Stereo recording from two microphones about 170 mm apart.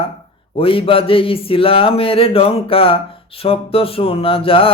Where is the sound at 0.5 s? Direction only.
35° left (ahead or behind).